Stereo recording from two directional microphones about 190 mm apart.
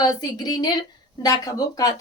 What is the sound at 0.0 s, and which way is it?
A woman's voice, 20° left (ahead or behind).